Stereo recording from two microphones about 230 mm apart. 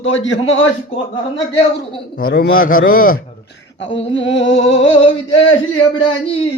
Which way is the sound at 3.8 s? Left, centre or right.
Left.